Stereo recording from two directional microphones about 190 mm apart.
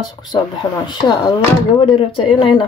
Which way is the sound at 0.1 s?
20° left (ahead or behind).